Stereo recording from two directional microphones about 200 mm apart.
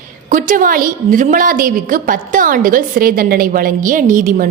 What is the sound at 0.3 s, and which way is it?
A woman's voice, 40° right (ahead or behind).